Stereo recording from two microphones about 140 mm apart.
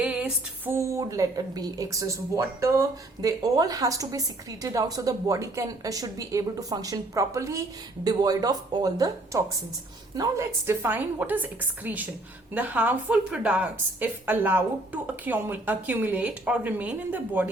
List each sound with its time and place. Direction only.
0.0 s female singing: 10° right (ahead or behind)
0.7 s a woman's voice: 20° right (ahead or behind)